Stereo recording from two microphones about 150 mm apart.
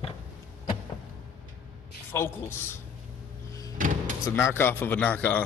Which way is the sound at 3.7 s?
60° right (ahead or behind).